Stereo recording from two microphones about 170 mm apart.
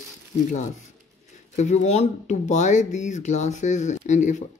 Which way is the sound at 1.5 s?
40° left (ahead or behind).